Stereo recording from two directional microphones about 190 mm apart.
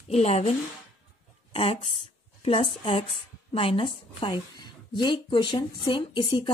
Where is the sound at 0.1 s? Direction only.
30° left (ahead or behind).